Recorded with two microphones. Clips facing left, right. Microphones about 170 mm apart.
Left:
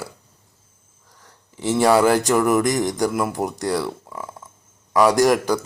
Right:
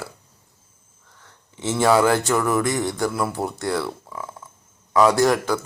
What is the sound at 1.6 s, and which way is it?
Speech, 10° left (ahead or behind).